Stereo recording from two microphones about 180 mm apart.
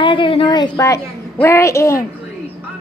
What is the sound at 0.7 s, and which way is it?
A woman's voice, 15° left (ahead or behind).